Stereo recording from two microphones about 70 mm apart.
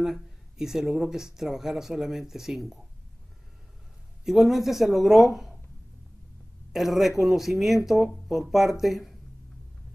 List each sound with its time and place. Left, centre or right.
0.0 s speech: centre
4.2 s speech: centre
6.7 s speech: centre